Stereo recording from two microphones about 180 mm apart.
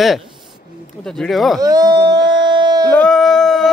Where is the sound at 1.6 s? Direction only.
20° right (ahead or behind).